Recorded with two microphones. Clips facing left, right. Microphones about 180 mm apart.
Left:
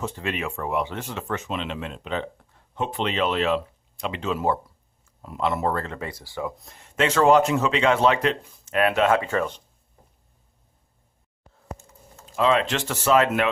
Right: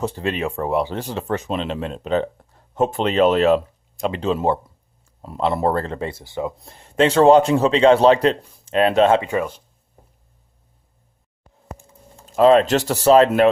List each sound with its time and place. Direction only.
0.0 s speech: 35° right (ahead or behind)
9.2 s speech: 10° right (ahead or behind)
12.2 s speech: 40° right (ahead or behind)